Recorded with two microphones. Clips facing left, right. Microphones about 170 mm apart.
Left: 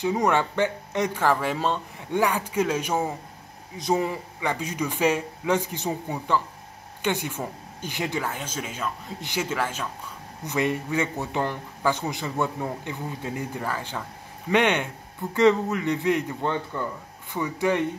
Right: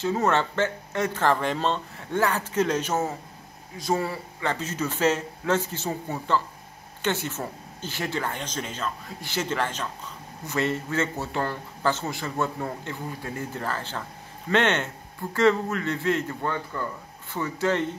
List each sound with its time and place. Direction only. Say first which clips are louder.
0.0 s a man's voice: left 1 dB; 15° left (ahead or behind)